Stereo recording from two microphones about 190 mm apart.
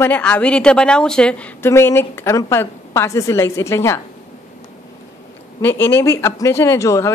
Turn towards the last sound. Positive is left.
turn(degrees=15)  # may be behind; listen again after turning